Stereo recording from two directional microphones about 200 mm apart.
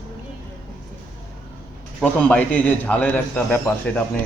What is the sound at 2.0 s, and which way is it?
A man's voice, 5° left (ahead or behind).